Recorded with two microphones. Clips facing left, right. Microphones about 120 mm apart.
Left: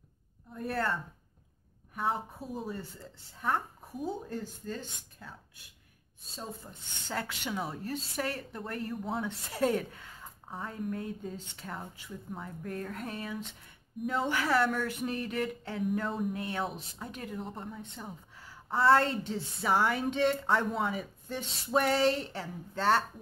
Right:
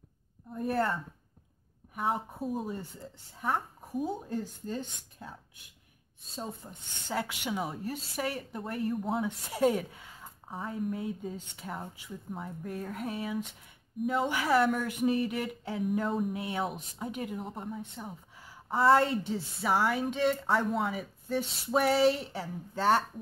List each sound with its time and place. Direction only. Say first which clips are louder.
0.5 s a woman's voice: right 3 dB; 15° right (ahead or behind)
2.0 s speech: right 1 dB; 15° right (ahead or behind)
4.3 s speech: right 3 dB; 15° right (ahead or behind)
6.7 s a woman's voice: right 2 dB; 10° right (ahead or behind)